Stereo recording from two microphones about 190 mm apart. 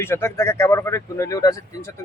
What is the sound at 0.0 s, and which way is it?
Speech, 10° left (ahead or behind).